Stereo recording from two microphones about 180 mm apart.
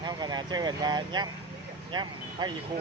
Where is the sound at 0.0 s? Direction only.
25° right (ahead or behind).